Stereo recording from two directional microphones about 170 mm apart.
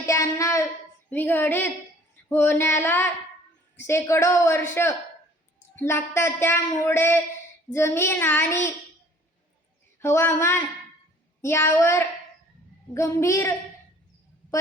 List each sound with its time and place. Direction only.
0.0 s a woman's voice: 15° left (ahead or behind)
10.0 s a woman's voice: 15° left (ahead or behind)